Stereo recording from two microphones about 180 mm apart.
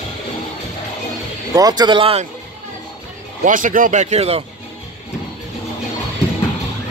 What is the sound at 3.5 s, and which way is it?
Speech, 45° right (ahead or behind).